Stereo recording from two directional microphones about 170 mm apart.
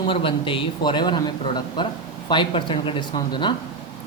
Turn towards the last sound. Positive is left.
turn(degrees=25)  # may be behind; listen again after turning